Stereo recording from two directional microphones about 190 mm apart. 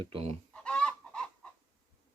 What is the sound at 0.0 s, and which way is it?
Speech, 30° right (ahead or behind).